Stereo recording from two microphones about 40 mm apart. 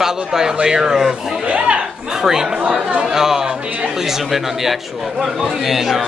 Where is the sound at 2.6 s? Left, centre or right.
Right.